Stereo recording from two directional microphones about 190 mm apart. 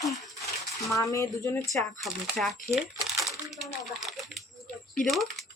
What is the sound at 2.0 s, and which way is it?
Speech, centre (ahead or behind).